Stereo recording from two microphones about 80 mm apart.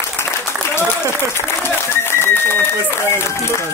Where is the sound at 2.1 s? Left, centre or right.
Left.